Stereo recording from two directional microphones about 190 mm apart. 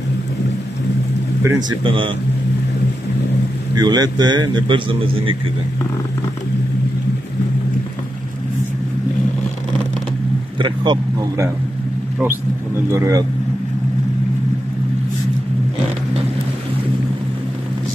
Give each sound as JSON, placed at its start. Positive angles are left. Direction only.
{"t": 1.4, "sound": "speech", "side_deg": -15}
{"t": 1.9, "sound": "a man's voice", "side_deg": -25}
{"t": 3.7, "sound": "a man's voice", "side_deg": -20}
{"t": 10.6, "sound": "a man's voice", "side_deg": -25}
{"t": 12.9, "sound": "speech", "side_deg": -15}